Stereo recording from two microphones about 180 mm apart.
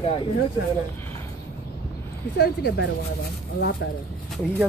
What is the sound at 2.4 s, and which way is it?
Speech, 65° left (ahead or behind).